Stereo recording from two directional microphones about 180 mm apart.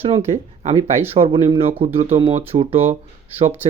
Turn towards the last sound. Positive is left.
turn(degrees=-35)  # may be behind; listen again after turning